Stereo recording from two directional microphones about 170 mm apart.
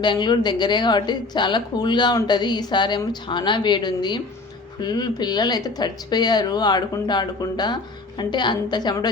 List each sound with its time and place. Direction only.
0.0 s speech: 25° left (ahead or behind)